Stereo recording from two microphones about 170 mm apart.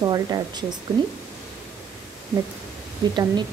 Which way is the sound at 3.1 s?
25° right (ahead or behind).